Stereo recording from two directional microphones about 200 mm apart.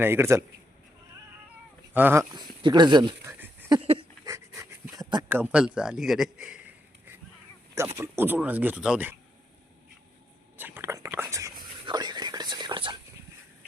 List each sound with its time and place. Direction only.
0.0 s speech: 10° right (ahead or behind)
1.9 s speech: 10° right (ahead or behind)
2.3 s speech: 20° right (ahead or behind)
3.3 s a sound: 10° right (ahead or behind)
3.7 s dog: 25° right (ahead or behind)
4.9 s a man's voice: 15° right (ahead or behind)
7.9 s speech: 15° right (ahead or behind)
10.6 s whispering: 10° right (ahead or behind)